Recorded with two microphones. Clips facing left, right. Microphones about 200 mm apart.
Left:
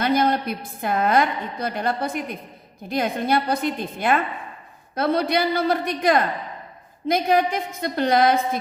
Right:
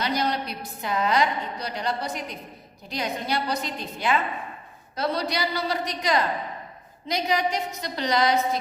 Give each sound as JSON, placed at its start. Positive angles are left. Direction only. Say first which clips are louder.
{"t": 0.0, "sound": "a woman's voice", "louder": "left 6 dB", "side_deg": 55}